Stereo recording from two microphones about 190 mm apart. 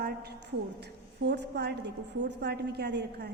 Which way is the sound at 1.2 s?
60° right (ahead or behind).